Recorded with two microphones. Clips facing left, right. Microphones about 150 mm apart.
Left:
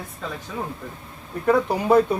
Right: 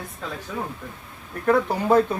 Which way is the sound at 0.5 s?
15° left (ahead or behind).